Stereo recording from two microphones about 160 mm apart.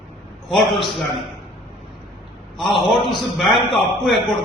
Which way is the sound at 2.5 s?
Centre (ahead or behind).